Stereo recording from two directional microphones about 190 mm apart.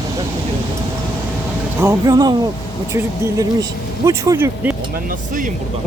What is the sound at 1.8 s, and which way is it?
Speech, 15° right (ahead or behind).